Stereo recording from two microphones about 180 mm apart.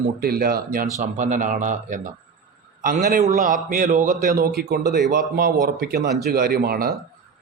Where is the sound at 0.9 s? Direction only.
45° right (ahead or behind).